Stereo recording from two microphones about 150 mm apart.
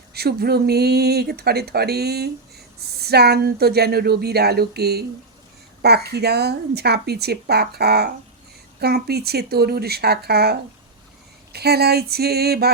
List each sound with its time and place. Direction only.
0.1 s speech: 90° right